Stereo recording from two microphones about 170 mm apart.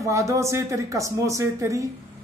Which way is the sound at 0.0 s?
20° right (ahead or behind).